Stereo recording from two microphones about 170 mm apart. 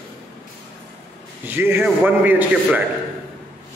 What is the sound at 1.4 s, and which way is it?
A man's voice, 10° right (ahead or behind).